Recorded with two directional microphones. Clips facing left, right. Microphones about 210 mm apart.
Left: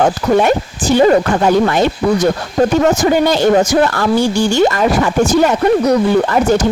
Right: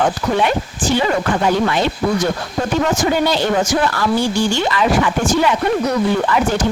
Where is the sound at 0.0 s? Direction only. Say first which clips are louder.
Left 5 dB; 45° left (ahead or behind).